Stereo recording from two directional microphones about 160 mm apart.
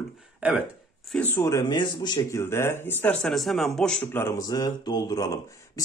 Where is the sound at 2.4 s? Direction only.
15° left (ahead or behind).